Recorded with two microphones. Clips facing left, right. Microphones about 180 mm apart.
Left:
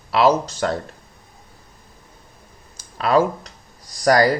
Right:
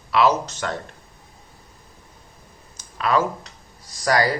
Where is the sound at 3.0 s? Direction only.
35° left (ahead or behind).